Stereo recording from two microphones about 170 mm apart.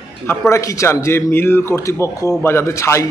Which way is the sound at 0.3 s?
15° left (ahead or behind).